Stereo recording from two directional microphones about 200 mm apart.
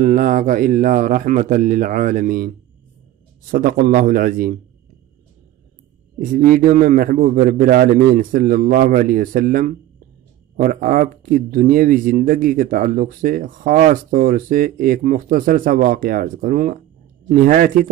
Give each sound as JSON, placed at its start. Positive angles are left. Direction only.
{"t": 0.0, "sound": "speech", "side_deg": -40}
{"t": 6.1, "sound": "speech", "side_deg": -45}